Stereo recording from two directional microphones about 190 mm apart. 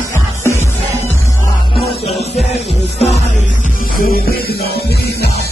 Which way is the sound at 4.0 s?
50° left (ahead or behind).